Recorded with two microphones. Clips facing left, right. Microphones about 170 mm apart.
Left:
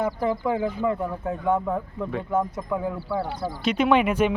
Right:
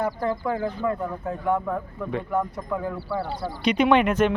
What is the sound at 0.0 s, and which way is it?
Speech, 15° left (ahead or behind).